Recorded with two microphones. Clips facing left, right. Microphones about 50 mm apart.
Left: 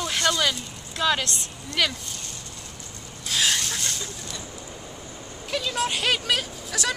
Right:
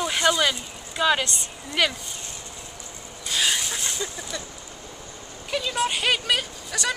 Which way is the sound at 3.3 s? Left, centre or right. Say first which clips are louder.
Even; centre.